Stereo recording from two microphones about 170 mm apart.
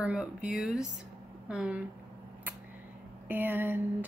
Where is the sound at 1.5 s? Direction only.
5° right (ahead or behind).